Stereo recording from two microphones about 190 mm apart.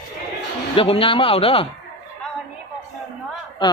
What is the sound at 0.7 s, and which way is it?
Speech, 30° left (ahead or behind).